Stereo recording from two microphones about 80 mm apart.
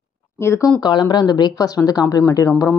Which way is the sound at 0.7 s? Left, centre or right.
Left.